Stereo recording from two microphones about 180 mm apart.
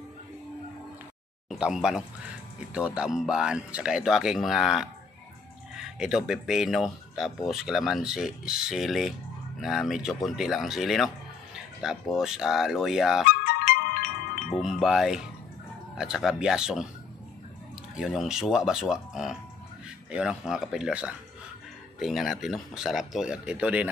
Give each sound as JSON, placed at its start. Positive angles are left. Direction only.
{"t": 1.5, "sound": "speech", "side_deg": 0}
{"t": 13.3, "sound": "music", "side_deg": 55}
{"t": 14.5, "sound": "speech", "side_deg": 0}
{"t": 17.9, "sound": "speech", "side_deg": 0}